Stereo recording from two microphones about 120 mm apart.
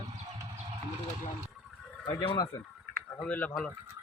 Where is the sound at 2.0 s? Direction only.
40° left (ahead or behind).